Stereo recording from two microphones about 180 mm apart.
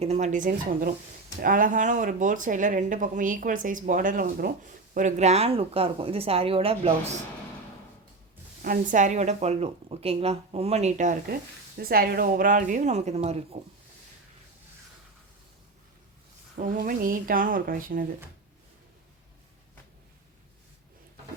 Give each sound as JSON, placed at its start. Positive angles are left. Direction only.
{"t": 0.0, "sound": "speech", "side_deg": -40}
{"t": 4.9, "sound": "speech", "side_deg": -40}
{"t": 8.6, "sound": "speech", "side_deg": -50}
{"t": 11.8, "sound": "speech", "side_deg": -55}
{"t": 16.6, "sound": "speech", "side_deg": -50}